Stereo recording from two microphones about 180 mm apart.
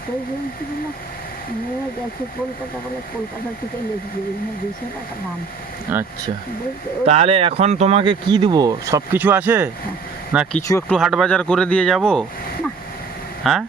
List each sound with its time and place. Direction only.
5.9 s speech: 10° right (ahead or behind)
7.0 s speech: 35° right (ahead or behind)
9.1 s speech: 10° right (ahead or behind)
10.7 s speech: 15° left (ahead or behind)
10.9 s speech: centre (ahead or behind)
13.4 s speech: centre (ahead or behind)